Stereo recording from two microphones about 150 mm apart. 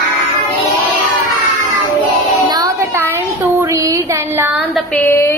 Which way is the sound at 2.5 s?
20° right (ahead or behind).